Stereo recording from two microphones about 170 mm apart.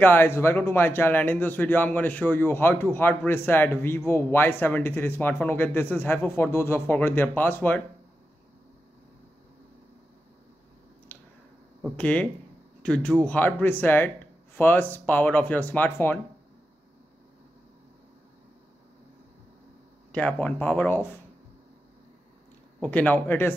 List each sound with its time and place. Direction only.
0.0 s speech: 10° left (ahead or behind)
12.0 s speech: 10° left (ahead or behind)
20.1 s speech: 5° left (ahead or behind)
22.8 s speech: 10° left (ahead or behind)